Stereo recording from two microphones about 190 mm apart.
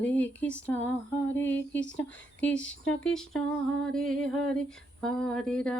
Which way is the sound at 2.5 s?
80° left.